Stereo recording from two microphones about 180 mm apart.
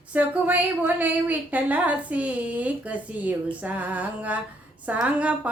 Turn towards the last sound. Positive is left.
turn(degrees=-5)  # may be behind; listen again after turning